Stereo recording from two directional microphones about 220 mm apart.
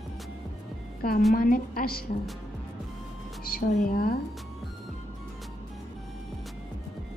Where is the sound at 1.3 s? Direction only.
40° left (ahead or behind).